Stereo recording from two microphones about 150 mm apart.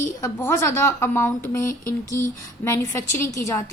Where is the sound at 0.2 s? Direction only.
15° left (ahead or behind).